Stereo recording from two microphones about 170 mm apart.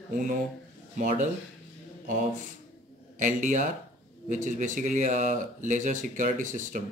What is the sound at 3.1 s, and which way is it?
A man's voice, 50° right (ahead or behind).